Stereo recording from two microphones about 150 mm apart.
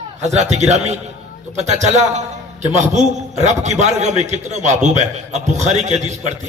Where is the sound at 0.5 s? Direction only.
50° right (ahead or behind).